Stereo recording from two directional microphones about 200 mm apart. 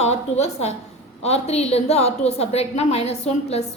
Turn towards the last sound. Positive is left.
turn(degrees=30)  # may be behind; listen again after turning